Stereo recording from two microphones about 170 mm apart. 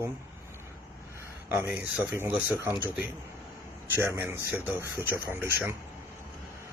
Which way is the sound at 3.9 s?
15° right (ahead or behind).